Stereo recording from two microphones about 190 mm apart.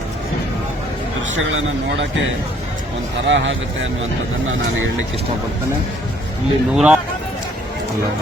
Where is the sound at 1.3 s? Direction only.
80° right.